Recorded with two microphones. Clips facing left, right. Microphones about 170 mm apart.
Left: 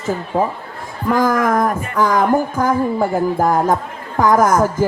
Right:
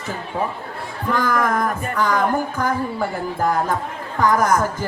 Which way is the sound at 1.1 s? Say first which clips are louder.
Left 5 dB; 45° left (ahead or behind).